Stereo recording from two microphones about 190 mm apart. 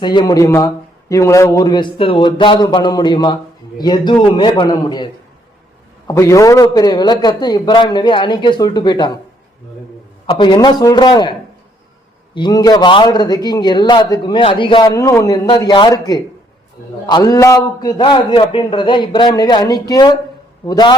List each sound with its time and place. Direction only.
0.0 s a man's voice: 25° left (ahead or behind)
6.1 s a man's voice: 15° left (ahead or behind)
10.2 s a man's voice: 25° left (ahead or behind)